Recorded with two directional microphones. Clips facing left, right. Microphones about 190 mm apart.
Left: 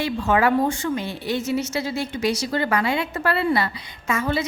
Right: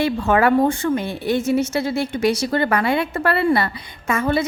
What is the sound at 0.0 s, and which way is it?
A woman's voice, 55° right (ahead or behind).